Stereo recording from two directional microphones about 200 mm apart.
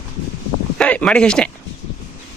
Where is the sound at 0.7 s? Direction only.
5° left (ahead or behind).